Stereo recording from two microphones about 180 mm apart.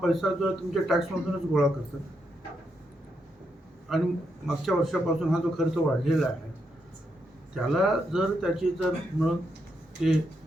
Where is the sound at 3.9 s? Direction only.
Centre (ahead or behind).